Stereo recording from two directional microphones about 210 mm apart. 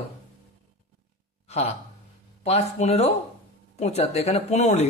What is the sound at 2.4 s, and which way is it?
Speech, 30° left (ahead or behind).